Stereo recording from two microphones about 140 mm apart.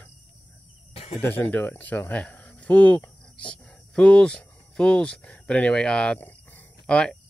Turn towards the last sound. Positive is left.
turn(degrees=5)  # may be behind; listen again after turning